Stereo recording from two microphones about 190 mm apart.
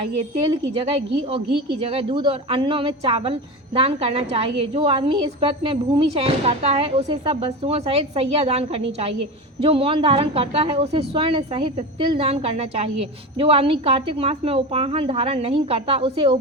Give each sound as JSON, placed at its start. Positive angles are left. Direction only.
{"t": 0.8, "sound": "a woman's voice", "side_deg": -30}